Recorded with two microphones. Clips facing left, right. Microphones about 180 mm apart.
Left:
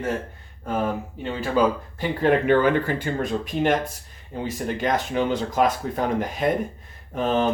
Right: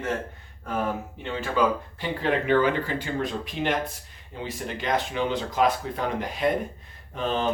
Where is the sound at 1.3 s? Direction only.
40° left (ahead or behind).